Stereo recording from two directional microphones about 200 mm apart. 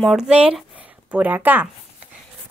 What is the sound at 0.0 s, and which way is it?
Speech, centre (ahead or behind).